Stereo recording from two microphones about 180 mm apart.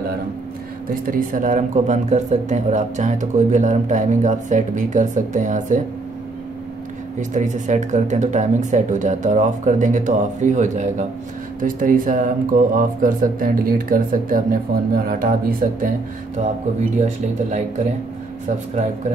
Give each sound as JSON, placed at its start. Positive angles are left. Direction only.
{"t": 1.0, "sound": "speech", "side_deg": -50}
{"t": 7.2, "sound": "speech", "side_deg": -45}
{"t": 17.0, "sound": "speech", "side_deg": -40}